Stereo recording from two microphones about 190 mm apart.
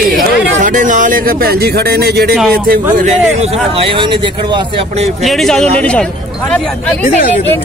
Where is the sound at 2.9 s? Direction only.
40° right (ahead or behind).